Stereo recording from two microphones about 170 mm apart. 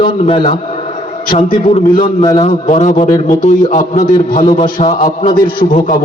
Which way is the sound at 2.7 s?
40° left (ahead or behind).